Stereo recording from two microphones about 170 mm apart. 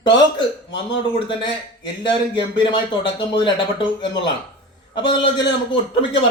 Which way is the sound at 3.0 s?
30° left (ahead or behind).